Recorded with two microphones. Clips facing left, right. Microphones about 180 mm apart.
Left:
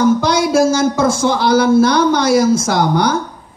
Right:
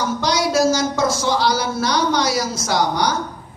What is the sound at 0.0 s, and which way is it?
A woman's voice, 55° left (ahead or behind).